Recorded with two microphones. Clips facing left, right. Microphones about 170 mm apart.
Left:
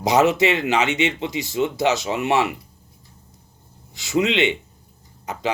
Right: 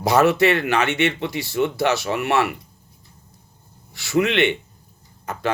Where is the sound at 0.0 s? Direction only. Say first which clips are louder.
Right 1 dB; 20° left (ahead or behind).